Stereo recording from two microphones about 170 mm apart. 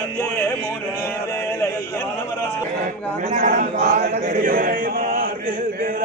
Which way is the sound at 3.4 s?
55° right (ahead or behind).